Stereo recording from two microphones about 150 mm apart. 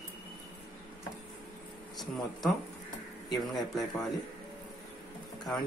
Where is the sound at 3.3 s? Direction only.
Centre (ahead or behind).